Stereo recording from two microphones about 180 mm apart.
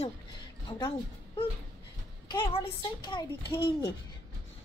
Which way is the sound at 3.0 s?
25° left (ahead or behind).